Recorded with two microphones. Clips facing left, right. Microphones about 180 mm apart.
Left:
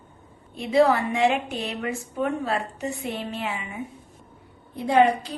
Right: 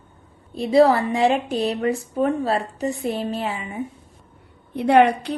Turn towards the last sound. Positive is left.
turn(degrees=-65)  # may be behind; listen again after turning